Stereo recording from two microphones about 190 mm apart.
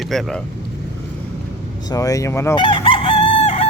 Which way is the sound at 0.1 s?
Centre (ahead or behind).